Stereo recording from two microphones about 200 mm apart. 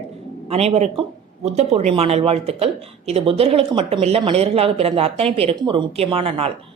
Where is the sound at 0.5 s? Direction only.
30° right (ahead or behind).